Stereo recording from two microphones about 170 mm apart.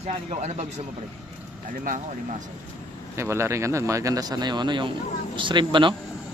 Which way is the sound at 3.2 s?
15° right (ahead or behind).